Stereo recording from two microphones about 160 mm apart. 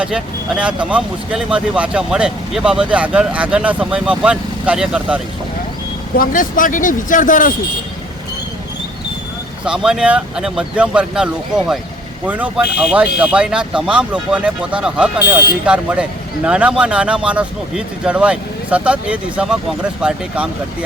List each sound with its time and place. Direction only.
0.0 s speech: 5° right (ahead or behind)
6.1 s speech: 60° left (ahead or behind)
9.6 s speech: 5° right (ahead or behind)